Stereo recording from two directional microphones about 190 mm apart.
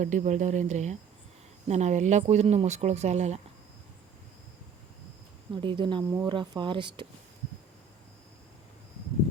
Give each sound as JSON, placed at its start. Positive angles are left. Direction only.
{"t": 0.0, "sound": "speech", "side_deg": -40}
{"t": 5.5, "sound": "speech", "side_deg": -25}